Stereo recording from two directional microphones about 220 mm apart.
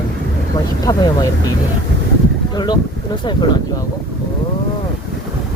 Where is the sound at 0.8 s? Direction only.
15° left (ahead or behind).